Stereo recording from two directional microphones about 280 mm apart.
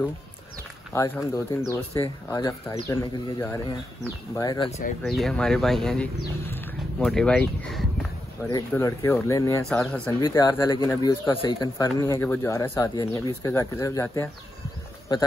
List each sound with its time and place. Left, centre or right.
0.9 s speech: centre
5.0 s speech: centre
6.5 s a sound: centre
8.5 s speech: centre